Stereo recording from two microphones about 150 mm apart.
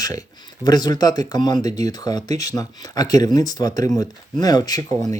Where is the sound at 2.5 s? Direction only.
25° left (ahead or behind).